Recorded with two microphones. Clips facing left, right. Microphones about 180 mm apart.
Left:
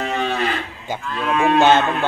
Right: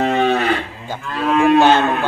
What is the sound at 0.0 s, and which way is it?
Cattle, 60° right (ahead or behind).